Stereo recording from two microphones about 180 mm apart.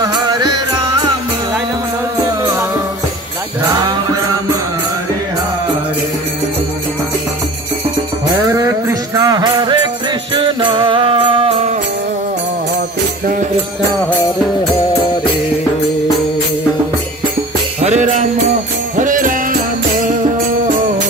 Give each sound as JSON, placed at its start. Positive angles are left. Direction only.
{"t": 0.0, "sound": "music", "side_deg": -20}
{"t": 8.5, "sound": "music", "side_deg": -15}
{"t": 17.7, "sound": "music", "side_deg": -40}